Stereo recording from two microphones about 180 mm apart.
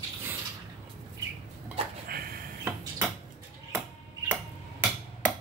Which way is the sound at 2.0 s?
55° right (ahead or behind).